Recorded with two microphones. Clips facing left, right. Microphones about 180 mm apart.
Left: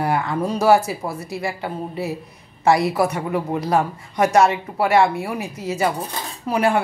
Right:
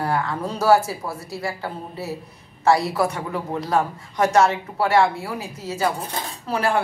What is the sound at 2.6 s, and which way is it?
A woman's voice, 20° left (ahead or behind).